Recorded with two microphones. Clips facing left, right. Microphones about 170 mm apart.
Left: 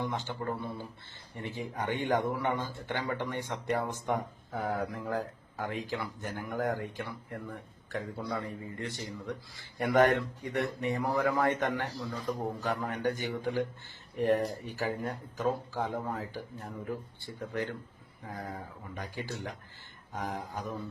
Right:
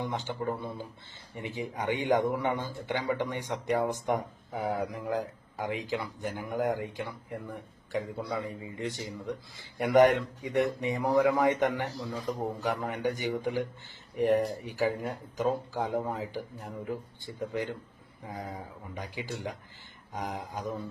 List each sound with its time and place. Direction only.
0.0 s a man's voice: 15° right (ahead or behind)
1.4 s a man's voice: 15° right (ahead or behind)